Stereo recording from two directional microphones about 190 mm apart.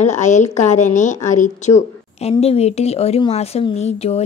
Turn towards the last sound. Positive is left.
turn(degrees=35)  # may be behind; listen again after turning